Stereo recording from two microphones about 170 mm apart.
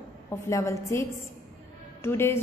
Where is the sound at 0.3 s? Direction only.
15° left (ahead or behind).